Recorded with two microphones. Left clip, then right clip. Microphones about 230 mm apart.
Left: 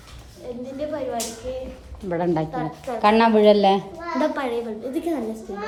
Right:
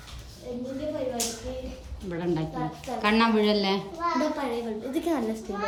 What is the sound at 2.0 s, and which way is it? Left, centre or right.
A woman's voice, centre.